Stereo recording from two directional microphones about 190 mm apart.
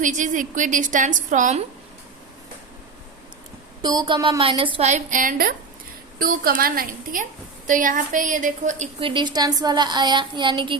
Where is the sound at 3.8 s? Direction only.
25° right (ahead or behind); by 8.9 s 40° right (ahead or behind).